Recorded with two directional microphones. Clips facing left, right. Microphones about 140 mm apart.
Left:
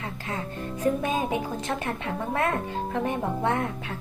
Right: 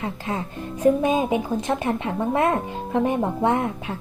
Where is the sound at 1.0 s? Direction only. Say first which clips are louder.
Right 6 dB; 15° right (ahead or behind).